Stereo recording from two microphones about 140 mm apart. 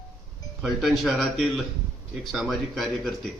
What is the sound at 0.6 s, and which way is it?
Speech, centre (ahead or behind).